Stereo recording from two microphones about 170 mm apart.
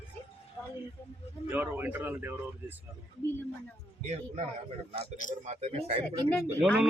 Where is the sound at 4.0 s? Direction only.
40° right (ahead or behind).